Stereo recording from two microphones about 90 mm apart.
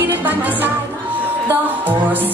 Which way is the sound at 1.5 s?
20° right (ahead or behind).